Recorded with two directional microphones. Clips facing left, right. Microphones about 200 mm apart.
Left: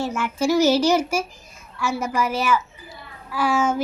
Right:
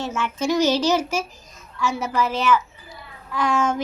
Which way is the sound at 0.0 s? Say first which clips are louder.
Left 2 dB; 10° left (ahead or behind).